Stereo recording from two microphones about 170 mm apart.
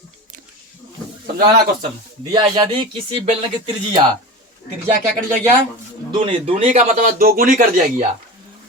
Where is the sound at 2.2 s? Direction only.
25° right (ahead or behind).